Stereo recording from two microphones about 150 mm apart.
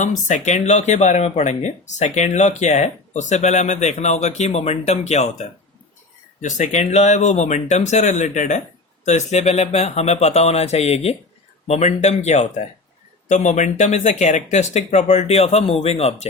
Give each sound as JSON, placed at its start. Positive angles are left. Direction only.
{"t": 0.0, "sound": "speech", "side_deg": 55}